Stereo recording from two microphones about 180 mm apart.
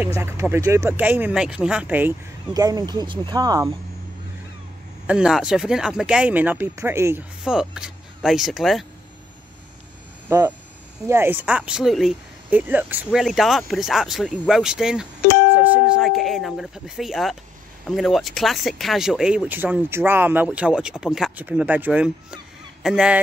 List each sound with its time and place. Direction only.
0.2 s speech: 15° right (ahead or behind)
2.5 s speech: 20° right (ahead or behind)
5.0 s speech: 5° right (ahead or behind)
10.3 s speech: 15° right (ahead or behind)